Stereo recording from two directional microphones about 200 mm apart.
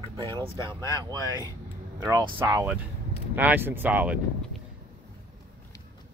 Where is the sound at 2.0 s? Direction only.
15° right (ahead or behind).